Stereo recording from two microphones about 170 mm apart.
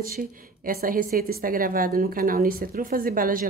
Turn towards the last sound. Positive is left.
turn(degrees=-55)  # may be behind; listen again after turning